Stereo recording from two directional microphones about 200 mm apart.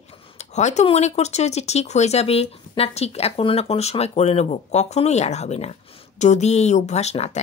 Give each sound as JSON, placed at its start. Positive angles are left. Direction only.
{"t": 0.4, "sound": "speech", "side_deg": 35}